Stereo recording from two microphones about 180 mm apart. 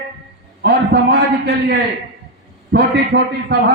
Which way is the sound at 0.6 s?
65° right (ahead or behind).